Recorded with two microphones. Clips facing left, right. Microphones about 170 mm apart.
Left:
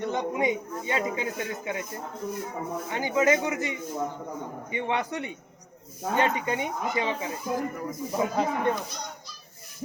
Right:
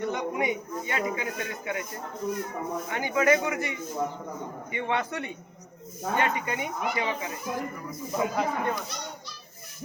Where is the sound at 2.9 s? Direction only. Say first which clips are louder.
Even; 20° left (ahead or behind).